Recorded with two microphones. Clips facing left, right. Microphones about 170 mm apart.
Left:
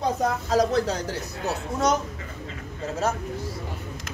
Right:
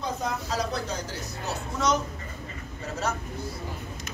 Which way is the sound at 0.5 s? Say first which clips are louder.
Left 10 dB; 45° left (ahead or behind).